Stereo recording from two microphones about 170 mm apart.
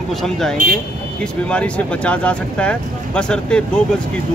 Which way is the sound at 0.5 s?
50° right (ahead or behind).